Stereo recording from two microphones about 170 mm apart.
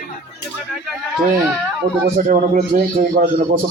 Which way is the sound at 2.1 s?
45° right (ahead or behind).